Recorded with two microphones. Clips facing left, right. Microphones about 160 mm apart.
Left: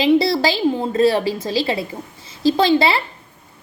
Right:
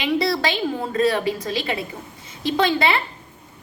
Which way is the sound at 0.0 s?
30° left (ahead or behind).